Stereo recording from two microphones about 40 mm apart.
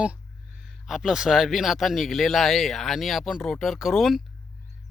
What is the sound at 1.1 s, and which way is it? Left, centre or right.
Speech, centre.